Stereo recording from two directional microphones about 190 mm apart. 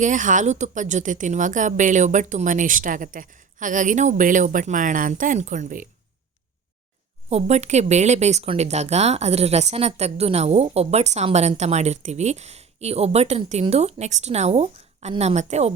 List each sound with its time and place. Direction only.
0.0 s a woman's voice: 40° right (ahead or behind)
7.3 s speech: 35° right (ahead or behind)